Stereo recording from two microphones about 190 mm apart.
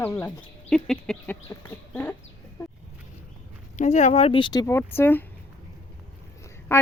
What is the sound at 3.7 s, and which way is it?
Speech, 40° left (ahead or behind).